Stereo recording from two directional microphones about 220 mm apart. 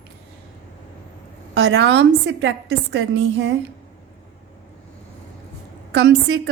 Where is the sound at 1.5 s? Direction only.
55° right (ahead or behind).